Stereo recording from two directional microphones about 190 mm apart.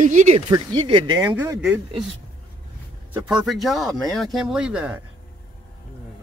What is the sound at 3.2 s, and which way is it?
Speech, 5° right (ahead or behind).